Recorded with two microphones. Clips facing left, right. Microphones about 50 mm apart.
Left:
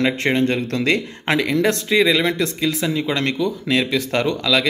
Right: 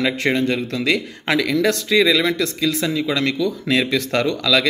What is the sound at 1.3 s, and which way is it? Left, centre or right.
Speech, left.